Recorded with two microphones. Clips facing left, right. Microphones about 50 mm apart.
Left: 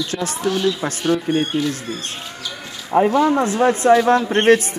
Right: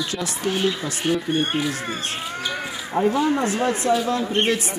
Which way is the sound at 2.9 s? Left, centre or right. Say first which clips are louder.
Left 5 dB; left.